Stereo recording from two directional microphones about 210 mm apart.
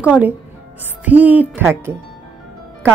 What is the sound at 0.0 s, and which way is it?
Speech, 5° right (ahead or behind).